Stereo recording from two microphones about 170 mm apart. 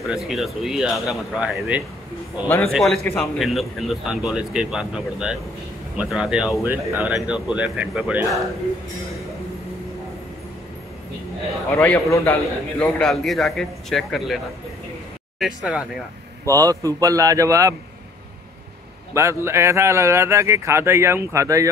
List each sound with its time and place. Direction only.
0.0 s speech: centre (ahead or behind)
2.4 s a man's voice: 15° left (ahead or behind)
2.7 s speech: centre (ahead or behind)
11.7 s a man's voice: 10° left (ahead or behind); by 15.8 s 5° right (ahead or behind)
16.4 s a man's voice: 20° right (ahead or behind)
19.1 s speech: 15° right (ahead or behind)